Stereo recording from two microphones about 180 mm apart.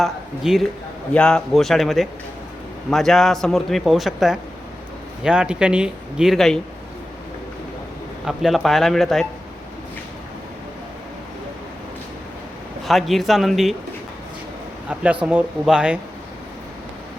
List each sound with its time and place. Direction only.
0.0 s a man's voice: centre (ahead or behind)
8.2 s a man's voice: centre (ahead or behind)
12.8 s a man's voice: centre (ahead or behind)
14.8 s speech: 5° right (ahead or behind)